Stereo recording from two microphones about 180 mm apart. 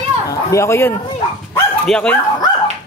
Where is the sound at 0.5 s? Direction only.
15° left (ahead or behind).